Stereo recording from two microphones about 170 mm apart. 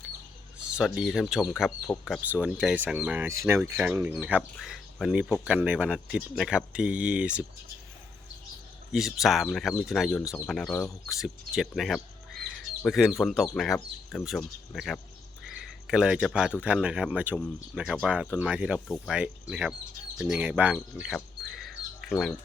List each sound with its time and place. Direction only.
0.8 s speech: centre (ahead or behind)
8.9 s speech: centre (ahead or behind)
10.8 s speech: 15° left (ahead or behind)
11.1 s speech: centre (ahead or behind)
15.4 s a sound: 5° right (ahead or behind)
16.6 s speech: 5° right (ahead or behind)
21.1 s bird: centre (ahead or behind)
22.1 s speech: centre (ahead or behind)